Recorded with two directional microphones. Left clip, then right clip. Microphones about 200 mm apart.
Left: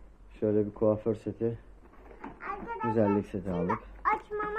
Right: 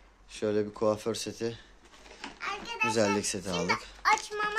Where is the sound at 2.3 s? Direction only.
30° right (ahead or behind).